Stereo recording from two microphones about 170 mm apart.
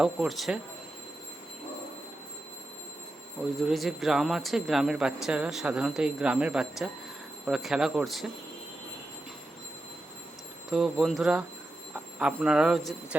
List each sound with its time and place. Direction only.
0.0 s speech: centre (ahead or behind)
3.7 s speech: centre (ahead or behind)
10.7 s speech: centre (ahead or behind)